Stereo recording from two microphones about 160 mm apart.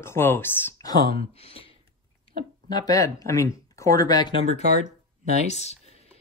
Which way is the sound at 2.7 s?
25° left (ahead or behind).